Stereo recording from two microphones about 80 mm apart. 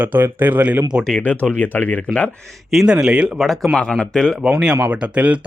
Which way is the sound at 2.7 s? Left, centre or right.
Centre.